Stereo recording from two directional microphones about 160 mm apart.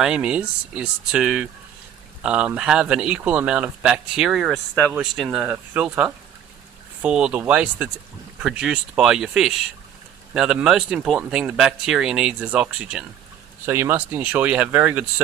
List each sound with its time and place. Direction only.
0.0 s speech: 5° right (ahead or behind)